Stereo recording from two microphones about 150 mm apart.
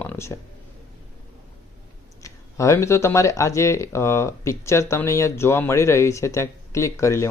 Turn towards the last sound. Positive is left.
turn(degrees=20)  # may be behind; listen again after turning